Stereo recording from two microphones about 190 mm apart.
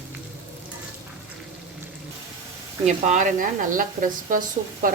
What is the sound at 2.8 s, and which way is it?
A woman's voice, 40° right (ahead or behind).